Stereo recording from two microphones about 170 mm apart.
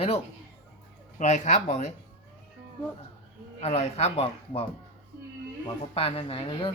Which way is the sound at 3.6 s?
40° left (ahead or behind).